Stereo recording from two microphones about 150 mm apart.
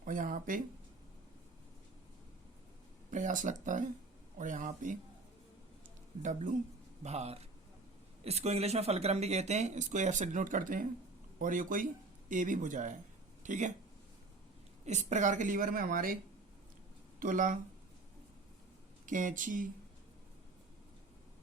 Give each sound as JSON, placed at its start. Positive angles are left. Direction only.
{"t": 0.0, "sound": "speech", "side_deg": -65}
{"t": 3.1, "sound": "a woman's voice", "side_deg": -60}
{"t": 6.2, "sound": "a woman's voice", "side_deg": -60}
{"t": 7.0, "sound": "a woman's voice", "side_deg": -45}
{"t": 14.8, "sound": "a woman's voice", "side_deg": -50}
{"t": 17.2, "sound": "a woman's voice", "side_deg": -60}
{"t": 19.0, "sound": "a woman's voice", "side_deg": -60}